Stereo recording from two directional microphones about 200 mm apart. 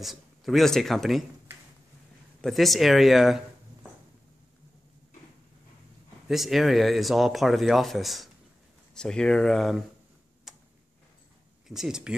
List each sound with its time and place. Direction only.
0.0 s speech: centre (ahead or behind)
2.4 s speech: centre (ahead or behind)
6.2 s speech: centre (ahead or behind)
10.5 s tick-tock: centre (ahead or behind)
11.6 s speech: centre (ahead or behind)